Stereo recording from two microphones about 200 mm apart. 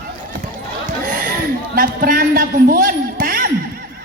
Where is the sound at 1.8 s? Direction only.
45° right (ahead or behind).